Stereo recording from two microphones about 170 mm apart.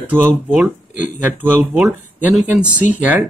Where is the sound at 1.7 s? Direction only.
5° right (ahead or behind).